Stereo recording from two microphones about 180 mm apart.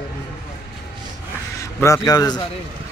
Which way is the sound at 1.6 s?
15° left (ahead or behind).